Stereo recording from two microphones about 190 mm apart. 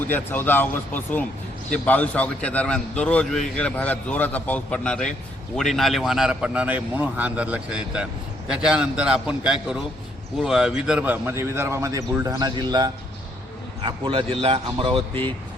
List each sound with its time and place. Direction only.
0.1 s a man's voice: 10° left (ahead or behind); by 15.2 s 25° right (ahead or behind)